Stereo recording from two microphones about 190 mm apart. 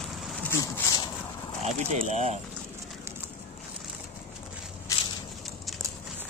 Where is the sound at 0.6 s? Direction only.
20° left (ahead or behind).